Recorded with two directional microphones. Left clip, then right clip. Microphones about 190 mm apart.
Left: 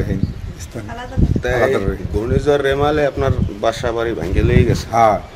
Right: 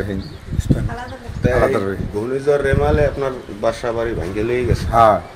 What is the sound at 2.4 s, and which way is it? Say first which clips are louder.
A man's voice: left 1 dB; 60° left (ahead or behind).